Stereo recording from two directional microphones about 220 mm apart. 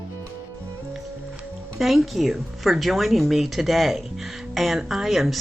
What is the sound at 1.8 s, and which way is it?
Speech, centre (ahead or behind).